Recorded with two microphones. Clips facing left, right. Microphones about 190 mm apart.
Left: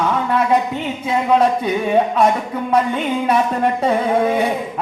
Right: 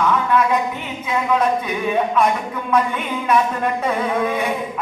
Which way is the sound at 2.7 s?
30° left (ahead or behind).